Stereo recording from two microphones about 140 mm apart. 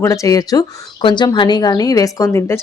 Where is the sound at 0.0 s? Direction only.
25° left (ahead or behind).